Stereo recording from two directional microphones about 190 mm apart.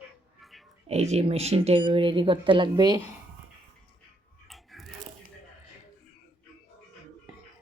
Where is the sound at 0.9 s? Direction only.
35° right (ahead or behind).